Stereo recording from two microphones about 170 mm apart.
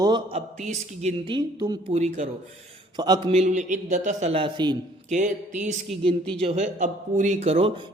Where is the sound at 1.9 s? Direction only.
40° right (ahead or behind).